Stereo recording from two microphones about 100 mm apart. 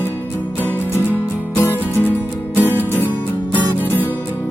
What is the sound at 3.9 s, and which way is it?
Music, 20° left (ahead or behind).